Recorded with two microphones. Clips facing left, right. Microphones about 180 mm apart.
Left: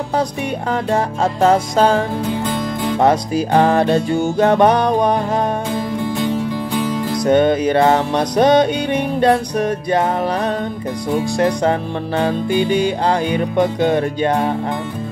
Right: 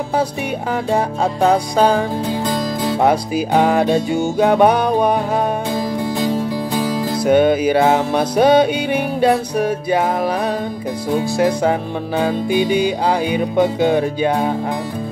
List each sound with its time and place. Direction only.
0.9 s music: centre (ahead or behind)
2.4 s music: 35° right (ahead or behind)
3.0 s music: 5° right (ahead or behind)
5.8 s music: 40° right (ahead or behind)
7.2 s music: 5° right (ahead or behind)
11.2 s music: 5° right (ahead or behind)
13.1 s music: 5° right (ahead or behind)